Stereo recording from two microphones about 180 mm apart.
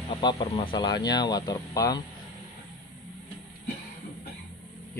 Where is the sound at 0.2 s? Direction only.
25° left (ahead or behind).